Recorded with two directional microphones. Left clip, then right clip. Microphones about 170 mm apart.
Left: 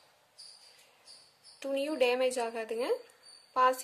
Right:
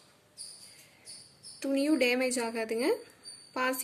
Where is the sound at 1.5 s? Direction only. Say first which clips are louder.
Right 3 dB; 40° left (ahead or behind).